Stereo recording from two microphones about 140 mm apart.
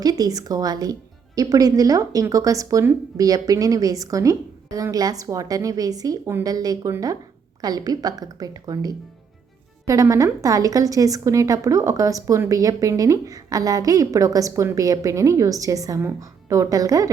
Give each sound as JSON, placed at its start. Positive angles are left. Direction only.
{"t": 0.0, "sound": "a woman's voice", "side_deg": -25}